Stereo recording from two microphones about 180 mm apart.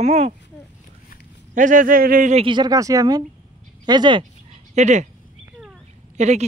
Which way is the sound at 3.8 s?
25° right (ahead or behind).